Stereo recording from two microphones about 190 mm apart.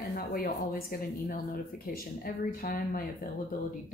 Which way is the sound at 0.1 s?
50° left (ahead or behind).